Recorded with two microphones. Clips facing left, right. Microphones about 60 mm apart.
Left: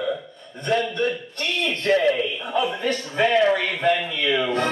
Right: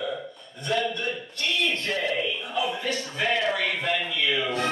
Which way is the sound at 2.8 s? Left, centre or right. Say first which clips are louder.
Left 6 dB; left.